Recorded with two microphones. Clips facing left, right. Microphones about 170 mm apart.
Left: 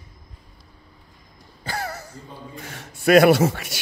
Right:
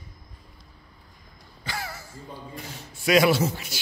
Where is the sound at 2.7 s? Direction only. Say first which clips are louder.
Left 6 dB; 55° left (ahead or behind).